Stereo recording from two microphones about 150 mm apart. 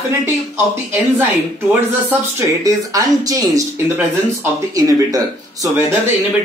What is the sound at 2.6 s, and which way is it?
Speech, 25° right (ahead or behind).